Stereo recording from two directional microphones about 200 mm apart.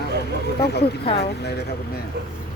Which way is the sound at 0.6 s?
55° left (ahead or behind).